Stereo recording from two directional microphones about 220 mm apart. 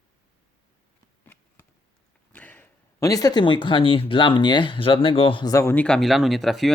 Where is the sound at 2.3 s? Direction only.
5° left (ahead or behind).